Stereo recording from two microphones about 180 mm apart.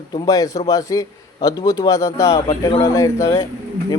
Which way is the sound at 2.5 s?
30° left (ahead or behind).